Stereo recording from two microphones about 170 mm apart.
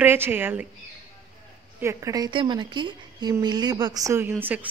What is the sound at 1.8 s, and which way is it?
A woman's voice, 20° right (ahead or behind).